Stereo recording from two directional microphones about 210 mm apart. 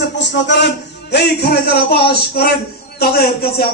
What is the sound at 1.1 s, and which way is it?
Speech, 50° left (ahead or behind).